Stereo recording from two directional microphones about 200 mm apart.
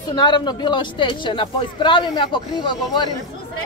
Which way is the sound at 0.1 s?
20° left (ahead or behind).